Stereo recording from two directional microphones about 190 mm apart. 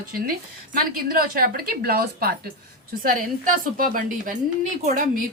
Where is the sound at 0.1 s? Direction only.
50° right (ahead or behind).